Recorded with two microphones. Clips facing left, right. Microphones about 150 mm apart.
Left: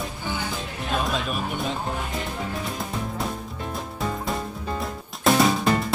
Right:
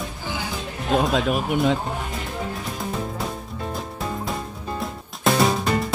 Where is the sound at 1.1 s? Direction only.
90° right.